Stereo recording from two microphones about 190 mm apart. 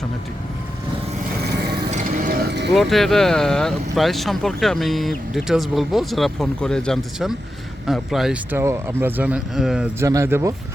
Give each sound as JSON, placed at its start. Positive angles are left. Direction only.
{"t": 1.9, "sound": "vehicle", "side_deg": -40}
{"t": 2.5, "sound": "vehicle", "side_deg": -60}
{"t": 2.7, "sound": "speech", "side_deg": 0}
{"t": 10.0, "sound": "speech", "side_deg": -15}